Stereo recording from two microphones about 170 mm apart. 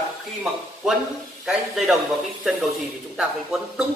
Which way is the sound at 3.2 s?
Centre (ahead or behind).